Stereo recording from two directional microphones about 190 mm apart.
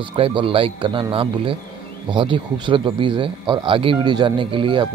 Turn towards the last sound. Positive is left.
turn(degrees=-25)  # may be behind; listen again after turning